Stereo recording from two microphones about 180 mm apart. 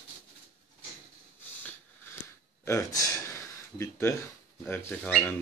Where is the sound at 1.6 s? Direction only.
10° left (ahead or behind).